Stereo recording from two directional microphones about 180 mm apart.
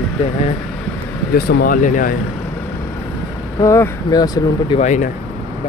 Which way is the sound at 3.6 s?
15° left (ahead or behind).